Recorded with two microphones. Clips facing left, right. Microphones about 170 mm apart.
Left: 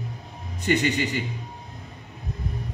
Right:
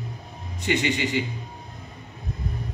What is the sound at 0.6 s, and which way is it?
Speech, 45° left (ahead or behind).